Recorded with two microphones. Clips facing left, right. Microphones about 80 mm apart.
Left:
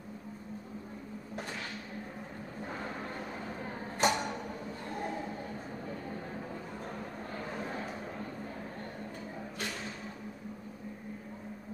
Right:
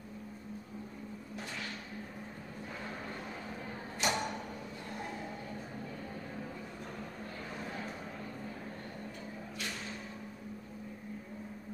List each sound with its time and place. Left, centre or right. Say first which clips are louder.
4.0 s mechanisms: left 5 dB; left